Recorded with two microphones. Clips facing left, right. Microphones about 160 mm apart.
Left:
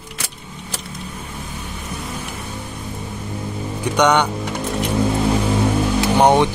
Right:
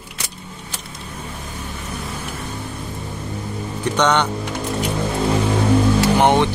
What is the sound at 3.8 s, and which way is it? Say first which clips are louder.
Music: left 2 dB; 10° left (ahead or behind).